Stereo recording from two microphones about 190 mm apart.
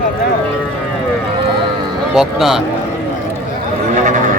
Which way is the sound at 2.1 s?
Centre (ahead or behind).